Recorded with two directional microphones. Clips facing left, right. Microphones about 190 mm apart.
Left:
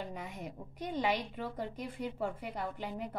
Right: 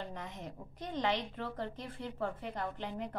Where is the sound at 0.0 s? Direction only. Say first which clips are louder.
Left 2 dB; 10° left (ahead or behind).